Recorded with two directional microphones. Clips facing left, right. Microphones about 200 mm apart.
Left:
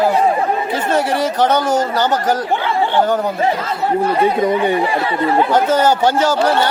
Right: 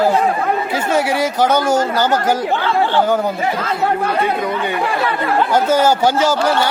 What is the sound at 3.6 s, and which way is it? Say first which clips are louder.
Speech: left 1 dB; 65° right (ahead or behind).